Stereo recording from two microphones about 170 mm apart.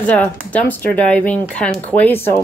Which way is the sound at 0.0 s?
10° left (ahead or behind).